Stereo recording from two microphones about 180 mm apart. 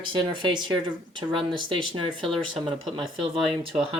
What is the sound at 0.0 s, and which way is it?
Speech, 30° right (ahead or behind).